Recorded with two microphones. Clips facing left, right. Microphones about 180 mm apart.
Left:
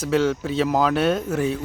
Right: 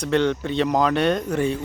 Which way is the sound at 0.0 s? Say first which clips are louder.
Even; 5° left (ahead or behind).